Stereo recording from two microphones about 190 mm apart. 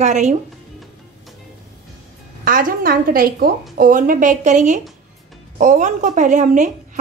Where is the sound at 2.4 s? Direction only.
50° right (ahead or behind).